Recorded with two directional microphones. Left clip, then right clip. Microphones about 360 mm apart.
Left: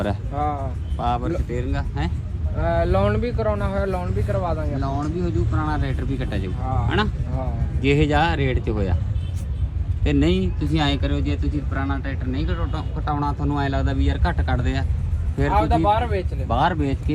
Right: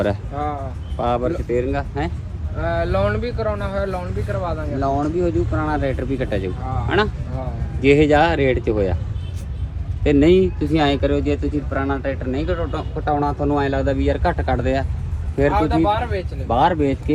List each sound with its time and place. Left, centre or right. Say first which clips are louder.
0.3 s speech: even; left
0.9 s speech: right 4 dB; centre
2.6 s speech: right 1 dB; left
4.8 s speech: right 7 dB; centre
10.0 s speech: right 8 dB; centre